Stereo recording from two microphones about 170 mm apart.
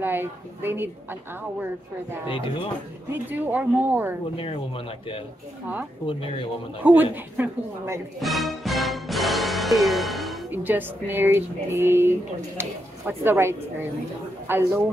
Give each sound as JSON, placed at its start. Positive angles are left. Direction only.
{"t": 0.0, "sound": "speech", "side_deg": -10}
{"t": 2.2, "sound": "speech", "side_deg": 30}
{"t": 3.1, "sound": "speech", "side_deg": -10}
{"t": 4.4, "sound": "speech", "side_deg": 30}
{"t": 6.8, "sound": "speech", "side_deg": -10}
{"t": 8.2, "sound": "music", "side_deg": 0}
{"t": 10.5, "sound": "speech", "side_deg": -10}